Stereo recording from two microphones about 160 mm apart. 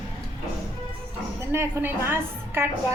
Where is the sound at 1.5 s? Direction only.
15° right (ahead or behind).